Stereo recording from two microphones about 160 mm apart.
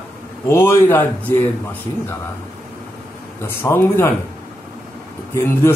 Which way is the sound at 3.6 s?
15° left (ahead or behind).